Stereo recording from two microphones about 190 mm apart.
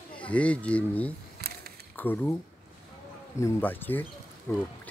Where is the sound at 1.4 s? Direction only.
55° right (ahead or behind).